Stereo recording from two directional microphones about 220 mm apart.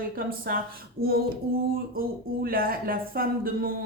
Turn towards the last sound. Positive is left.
turn(degrees=-40)  # may be behind; listen again after turning